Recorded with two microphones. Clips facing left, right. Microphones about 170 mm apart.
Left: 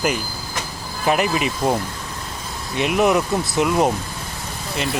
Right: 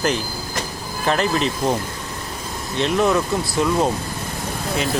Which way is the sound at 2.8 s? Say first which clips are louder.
Left 1 dB; 15° left (ahead or behind).